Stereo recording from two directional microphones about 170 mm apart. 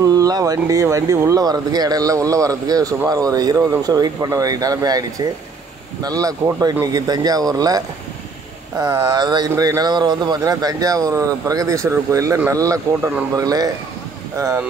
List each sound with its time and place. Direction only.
0.0 s speech: 20° right (ahead or behind)
6.0 s speech: 20° right (ahead or behind)